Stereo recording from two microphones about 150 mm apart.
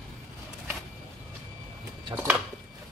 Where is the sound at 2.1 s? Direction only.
5° right (ahead or behind).